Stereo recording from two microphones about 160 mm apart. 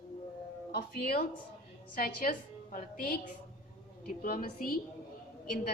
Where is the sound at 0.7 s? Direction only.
70° left (ahead or behind).